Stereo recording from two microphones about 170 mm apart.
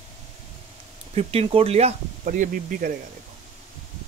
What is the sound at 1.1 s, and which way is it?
Speech, 35° right (ahead or behind).